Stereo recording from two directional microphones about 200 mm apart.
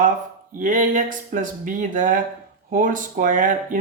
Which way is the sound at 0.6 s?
40° right (ahead or behind).